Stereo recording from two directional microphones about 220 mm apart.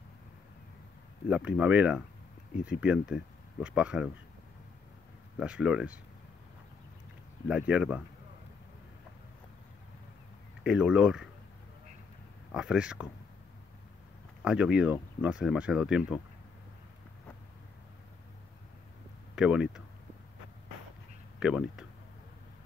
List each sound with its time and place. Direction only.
1.3 s speech: 5° right (ahead or behind)
5.4 s speech: 5° right (ahead or behind)
7.4 s speech: 5° right (ahead or behind)
10.6 s speech: 5° right (ahead or behind)
12.5 s speech: 5° right (ahead or behind)
14.4 s speech: 5° right (ahead or behind)
19.3 s speech: 5° right (ahead or behind)
21.4 s speech: 5° right (ahead or behind)